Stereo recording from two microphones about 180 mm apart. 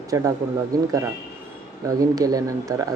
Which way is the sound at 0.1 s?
20° right (ahead or behind).